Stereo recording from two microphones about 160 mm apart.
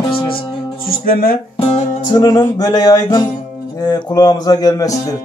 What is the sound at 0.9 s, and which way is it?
Speech, 70° left (ahead or behind).